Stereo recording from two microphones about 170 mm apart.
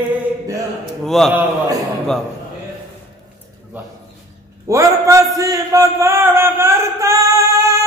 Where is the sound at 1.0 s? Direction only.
Centre (ahead or behind).